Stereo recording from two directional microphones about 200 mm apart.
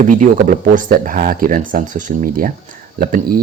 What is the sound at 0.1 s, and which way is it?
Speech, 40° right (ahead or behind).